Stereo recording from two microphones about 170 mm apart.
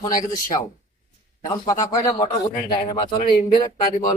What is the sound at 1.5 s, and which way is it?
Speech, 25° left (ahead or behind).